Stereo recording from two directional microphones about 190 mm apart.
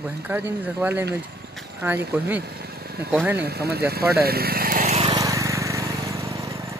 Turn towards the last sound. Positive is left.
turn(degrees=-15)  # may be behind; listen again after turning